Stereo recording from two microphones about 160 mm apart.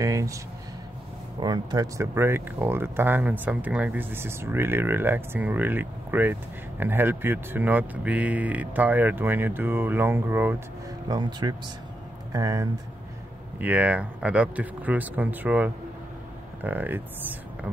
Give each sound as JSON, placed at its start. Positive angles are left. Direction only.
{"t": 0.0, "sound": "speech", "side_deg": -20}
{"t": 1.4, "sound": "speech", "side_deg": -25}
{"t": 11.1, "sound": "speech", "side_deg": -25}
{"t": 13.6, "sound": "speech", "side_deg": -10}